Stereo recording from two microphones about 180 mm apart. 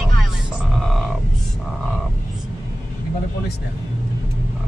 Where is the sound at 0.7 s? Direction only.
Centre (ahead or behind).